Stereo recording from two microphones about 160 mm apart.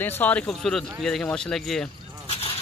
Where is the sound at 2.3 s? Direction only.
40° left (ahead or behind).